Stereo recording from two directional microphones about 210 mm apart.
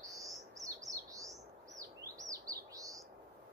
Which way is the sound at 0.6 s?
15° right (ahead or behind).